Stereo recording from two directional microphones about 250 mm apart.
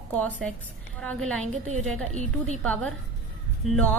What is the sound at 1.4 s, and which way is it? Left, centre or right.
A woman's voice, right.